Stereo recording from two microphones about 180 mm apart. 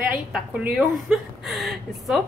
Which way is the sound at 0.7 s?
5° right (ahead or behind).